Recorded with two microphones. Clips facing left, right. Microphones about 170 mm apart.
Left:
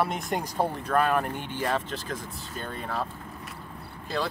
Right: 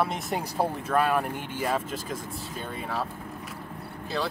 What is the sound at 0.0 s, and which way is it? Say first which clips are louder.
Speech: even; centre (ahead or behind).